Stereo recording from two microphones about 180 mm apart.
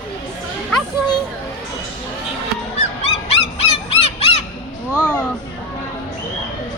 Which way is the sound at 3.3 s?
35° left (ahead or behind).